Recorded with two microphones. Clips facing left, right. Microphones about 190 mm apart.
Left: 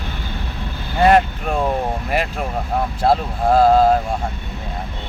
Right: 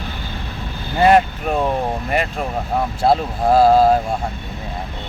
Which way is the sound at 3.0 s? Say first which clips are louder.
Right 1 dB; 5° right (ahead or behind).